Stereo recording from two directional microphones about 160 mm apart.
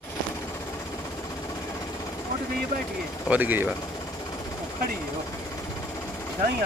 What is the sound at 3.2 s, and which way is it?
Speech, 10° right (ahead or behind).